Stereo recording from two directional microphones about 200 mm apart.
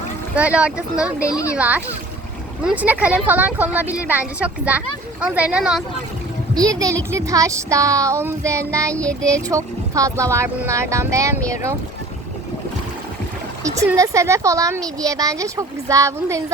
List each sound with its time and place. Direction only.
0.3 s speech: 5° right (ahead or behind)
1.3 s speech: 15° left (ahead or behind)
1.5 s a woman's voice: 5° right (ahead or behind)
6.5 s a woman's voice: 20° right (ahead or behind)
8.9 s speech: 5° left (ahead or behind)
9.2 s a woman's voice: 15° right (ahead or behind)
13.7 s a woman's voice: 15° right (ahead or behind)